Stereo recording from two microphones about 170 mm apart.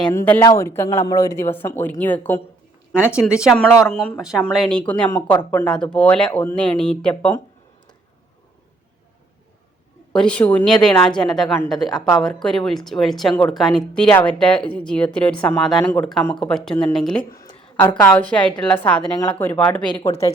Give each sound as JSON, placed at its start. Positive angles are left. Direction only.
{"t": 0.0, "sound": "speech", "side_deg": 15}
{"t": 3.4, "sound": "a woman's voice", "side_deg": -5}
{"t": 10.1, "sound": "a woman's voice", "side_deg": 5}
{"t": 19.8, "sound": "speech", "side_deg": 25}